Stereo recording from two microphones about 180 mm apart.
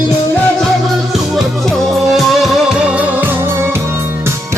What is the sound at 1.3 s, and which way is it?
Music, centre (ahead or behind).